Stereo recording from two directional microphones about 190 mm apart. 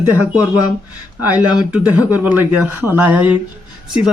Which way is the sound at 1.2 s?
5° right (ahead or behind).